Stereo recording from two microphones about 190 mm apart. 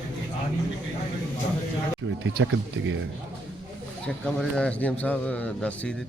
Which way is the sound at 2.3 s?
85° right.